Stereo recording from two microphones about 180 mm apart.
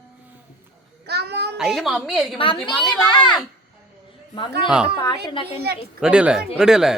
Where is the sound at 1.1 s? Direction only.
65° right (ahead or behind).